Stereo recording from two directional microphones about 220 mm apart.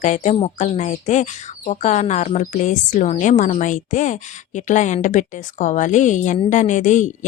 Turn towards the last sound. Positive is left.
turn(degrees=35)  # may be behind; listen again after turning